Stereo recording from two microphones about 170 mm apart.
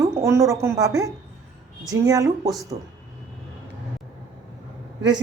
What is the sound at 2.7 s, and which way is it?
Speech, 45° right (ahead or behind).